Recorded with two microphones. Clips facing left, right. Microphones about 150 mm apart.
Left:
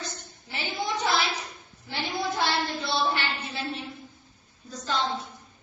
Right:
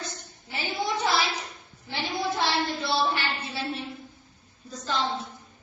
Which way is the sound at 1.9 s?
Centre (ahead or behind).